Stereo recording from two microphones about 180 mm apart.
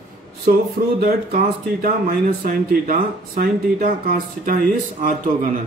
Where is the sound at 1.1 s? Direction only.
55° right (ahead or behind).